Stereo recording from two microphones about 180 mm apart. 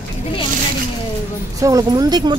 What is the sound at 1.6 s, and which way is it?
Speech, 20° right (ahead or behind).